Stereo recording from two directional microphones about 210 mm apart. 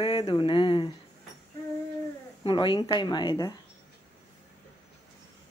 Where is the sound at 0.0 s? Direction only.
25° left (ahead or behind).